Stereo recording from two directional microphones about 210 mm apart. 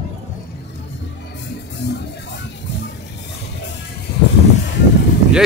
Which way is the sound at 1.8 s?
50° left (ahead or behind).